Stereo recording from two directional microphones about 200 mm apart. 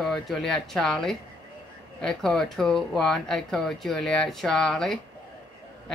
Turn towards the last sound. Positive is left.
turn(degrees=0)  # may be behind; listen again after turning